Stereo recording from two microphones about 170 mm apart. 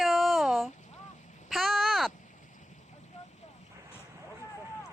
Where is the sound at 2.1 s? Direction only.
45° left (ahead or behind).